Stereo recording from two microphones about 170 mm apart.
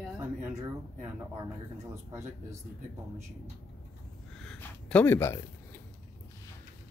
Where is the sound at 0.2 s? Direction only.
15° right (ahead or behind).